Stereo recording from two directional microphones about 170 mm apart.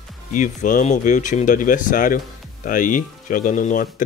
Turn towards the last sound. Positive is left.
turn(degrees=50)  # may be behind; listen again after turning